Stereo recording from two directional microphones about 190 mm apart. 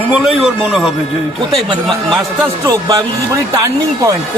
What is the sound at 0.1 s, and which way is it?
Speech, centre (ahead or behind).